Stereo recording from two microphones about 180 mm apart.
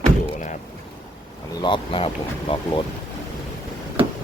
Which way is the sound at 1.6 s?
30° left (ahead or behind).